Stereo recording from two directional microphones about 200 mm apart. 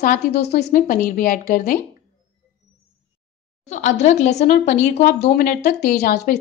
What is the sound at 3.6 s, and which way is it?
A woman's voice, 35° left (ahead or behind).